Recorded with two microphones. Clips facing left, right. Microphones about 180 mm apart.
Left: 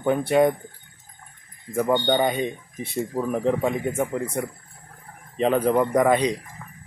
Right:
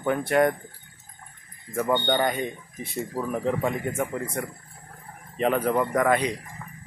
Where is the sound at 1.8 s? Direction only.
10° left (ahead or behind).